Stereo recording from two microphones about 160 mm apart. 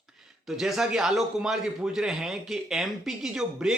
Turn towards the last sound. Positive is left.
turn(degrees=-5)  # may be behind; listen again after turning